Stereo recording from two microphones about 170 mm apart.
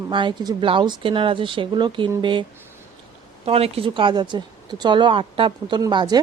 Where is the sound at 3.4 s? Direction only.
35° right (ahead or behind).